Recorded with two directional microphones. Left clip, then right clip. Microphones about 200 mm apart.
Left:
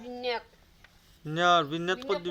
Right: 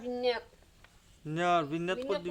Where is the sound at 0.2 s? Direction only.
40° right (ahead or behind).